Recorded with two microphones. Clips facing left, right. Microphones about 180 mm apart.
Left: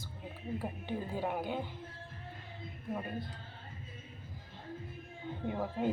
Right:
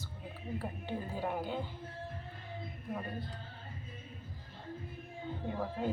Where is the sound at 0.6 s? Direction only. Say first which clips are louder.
Left 1 dB; 15° left (ahead or behind).